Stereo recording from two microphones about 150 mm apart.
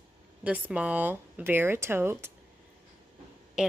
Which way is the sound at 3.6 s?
5° right (ahead or behind).